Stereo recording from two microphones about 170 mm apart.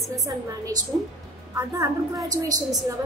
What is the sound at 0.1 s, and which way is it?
A woman's voice, 20° right (ahead or behind).